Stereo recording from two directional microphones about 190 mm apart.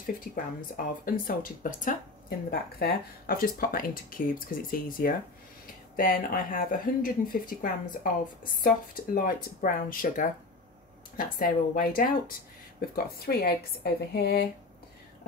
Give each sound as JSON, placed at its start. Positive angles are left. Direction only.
{"t": 0.7, "sound": "speech", "side_deg": 45}